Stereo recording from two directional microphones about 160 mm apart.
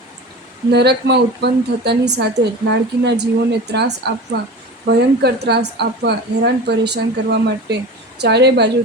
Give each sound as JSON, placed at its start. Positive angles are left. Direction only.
{"t": 0.7, "sound": "a woman's voice", "side_deg": -90}